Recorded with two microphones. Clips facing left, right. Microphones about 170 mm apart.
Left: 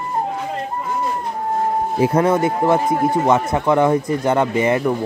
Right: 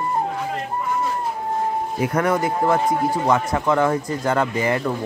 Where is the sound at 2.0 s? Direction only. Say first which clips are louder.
Left 5 dB; 25° left (ahead or behind).